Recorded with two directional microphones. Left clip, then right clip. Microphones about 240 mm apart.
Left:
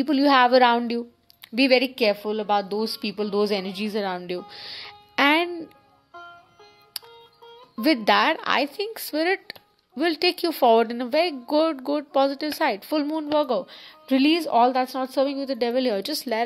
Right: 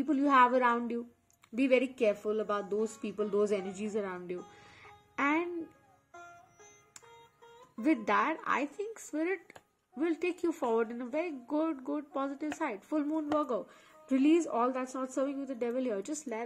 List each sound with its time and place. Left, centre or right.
0.0 s a woman's voice: left
7.8 s a woman's voice: left